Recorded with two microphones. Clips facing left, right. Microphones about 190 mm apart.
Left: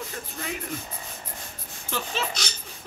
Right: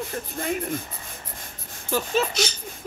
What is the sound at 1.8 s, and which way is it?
Speech, 45° right (ahead or behind).